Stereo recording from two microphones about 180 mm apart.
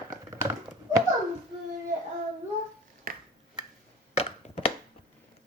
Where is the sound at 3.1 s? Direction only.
55° right (ahead or behind).